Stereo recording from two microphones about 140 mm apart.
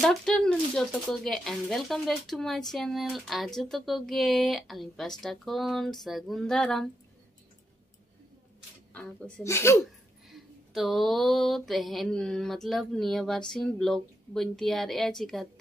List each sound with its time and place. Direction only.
0.0 s speech: centre (ahead or behind)
9.4 s speech: 20° left (ahead or behind)
10.2 s speech: centre (ahead or behind)